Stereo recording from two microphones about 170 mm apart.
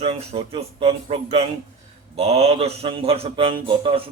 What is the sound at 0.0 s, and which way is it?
A man's voice, 35° right (ahead or behind).